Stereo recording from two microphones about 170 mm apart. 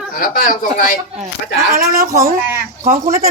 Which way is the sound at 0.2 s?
55° left (ahead or behind).